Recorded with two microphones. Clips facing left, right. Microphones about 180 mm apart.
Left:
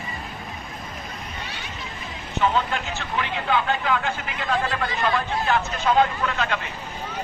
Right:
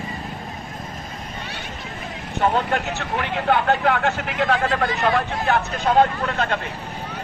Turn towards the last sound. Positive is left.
turn(degrees=-50)  # may be behind; listen again after turning